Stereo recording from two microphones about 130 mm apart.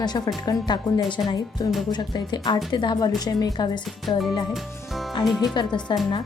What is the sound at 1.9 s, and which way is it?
Speech, 35° left (ahead or behind).